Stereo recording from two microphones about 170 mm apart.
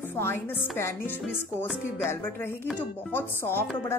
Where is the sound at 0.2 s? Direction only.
15° left (ahead or behind).